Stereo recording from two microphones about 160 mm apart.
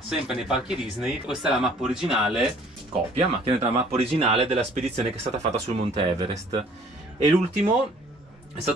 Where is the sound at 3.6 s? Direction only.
35° right (ahead or behind).